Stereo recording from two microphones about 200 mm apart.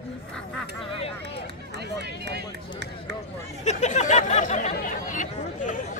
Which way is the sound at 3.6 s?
35° left (ahead or behind).